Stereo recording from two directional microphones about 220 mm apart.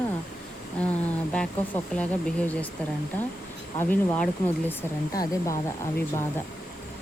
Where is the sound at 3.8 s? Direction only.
10° left (ahead or behind).